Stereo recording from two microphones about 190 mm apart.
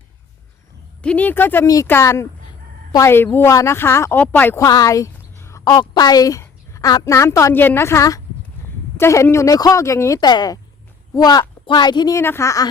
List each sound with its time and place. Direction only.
1.0 s a woman's voice: 10° left (ahead or behind)